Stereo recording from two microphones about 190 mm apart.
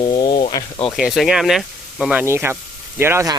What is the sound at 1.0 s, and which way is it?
Speech, centre (ahead or behind).